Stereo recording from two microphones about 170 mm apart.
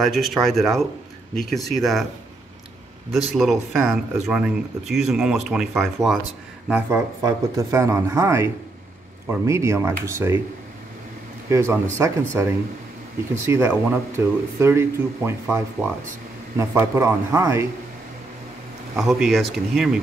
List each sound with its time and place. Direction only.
0.0 s speech: centre (ahead or behind)
3.1 s speech: centre (ahead or behind)
7.2 s speech: 20° right (ahead or behind)
11.4 s speech: 15° right (ahead or behind)
18.9 s speech: centre (ahead or behind)